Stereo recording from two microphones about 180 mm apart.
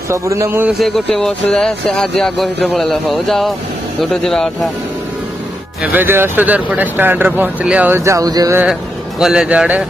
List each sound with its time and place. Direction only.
0.1 s speech: 15° right (ahead or behind)
0.7 s speech: centre (ahead or behind)
5.8 s speech: 10° right (ahead or behind)
9.2 s speech: 5° right (ahead or behind)